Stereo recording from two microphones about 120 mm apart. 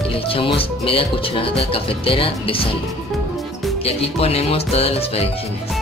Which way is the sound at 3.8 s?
55° left (ahead or behind).